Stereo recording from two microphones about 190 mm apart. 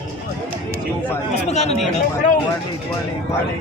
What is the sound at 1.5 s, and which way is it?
Speech, 35° left (ahead or behind).